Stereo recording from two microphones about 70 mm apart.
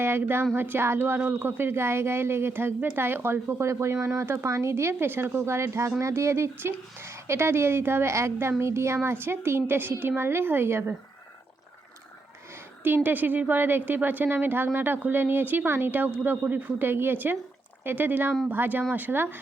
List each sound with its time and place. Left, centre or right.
0.0 s speech: right
3.6 s speech: right
12.8 s a woman's voice: right